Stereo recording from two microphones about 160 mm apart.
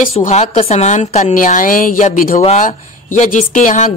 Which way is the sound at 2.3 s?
45° left (ahead or behind).